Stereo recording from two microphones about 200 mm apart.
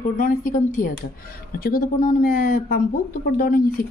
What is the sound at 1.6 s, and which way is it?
Speech, 45° left (ahead or behind).